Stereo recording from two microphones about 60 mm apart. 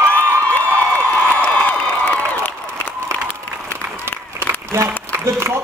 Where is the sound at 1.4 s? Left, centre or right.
Left.